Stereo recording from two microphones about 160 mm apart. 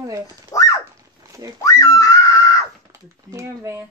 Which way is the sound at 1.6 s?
20° left (ahead or behind).